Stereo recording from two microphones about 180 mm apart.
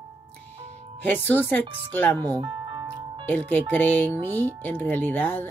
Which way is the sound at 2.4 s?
20° right (ahead or behind).